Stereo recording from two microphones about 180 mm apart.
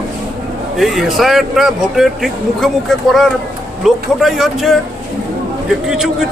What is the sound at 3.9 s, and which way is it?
Speech, centre (ahead or behind).